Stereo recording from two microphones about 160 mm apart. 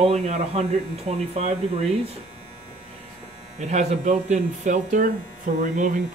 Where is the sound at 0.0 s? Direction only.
40° right (ahead or behind).